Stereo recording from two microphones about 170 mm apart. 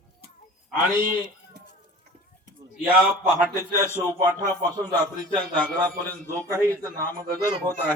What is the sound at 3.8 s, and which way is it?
Speech, 15° right (ahead or behind).